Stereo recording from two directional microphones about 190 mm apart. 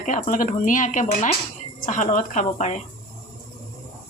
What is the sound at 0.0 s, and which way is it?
Speech, 40° left (ahead or behind).